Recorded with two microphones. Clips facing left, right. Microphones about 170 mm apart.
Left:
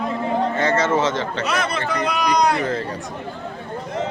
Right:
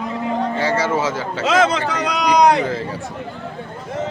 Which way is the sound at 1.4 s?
90° right.